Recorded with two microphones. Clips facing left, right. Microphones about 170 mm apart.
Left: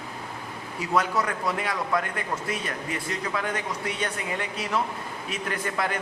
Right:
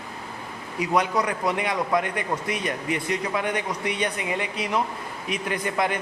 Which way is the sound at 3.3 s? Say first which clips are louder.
Right 3 dB; 20° right (ahead or behind).